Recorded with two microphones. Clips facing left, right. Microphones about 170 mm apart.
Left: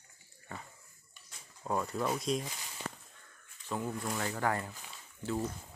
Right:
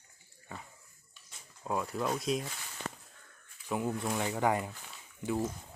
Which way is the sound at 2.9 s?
50° right (ahead or behind).